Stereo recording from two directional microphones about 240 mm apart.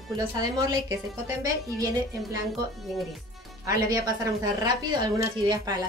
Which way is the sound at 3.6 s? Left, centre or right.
Centre.